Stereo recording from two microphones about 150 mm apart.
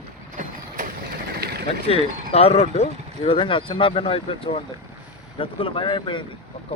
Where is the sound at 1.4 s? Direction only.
90° right.